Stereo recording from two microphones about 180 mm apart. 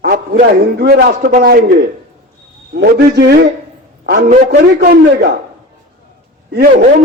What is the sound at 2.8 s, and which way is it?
Speech, 70° right (ahead or behind).